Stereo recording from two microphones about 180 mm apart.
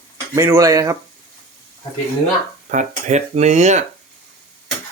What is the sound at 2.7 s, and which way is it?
Speech, 45° right (ahead or behind).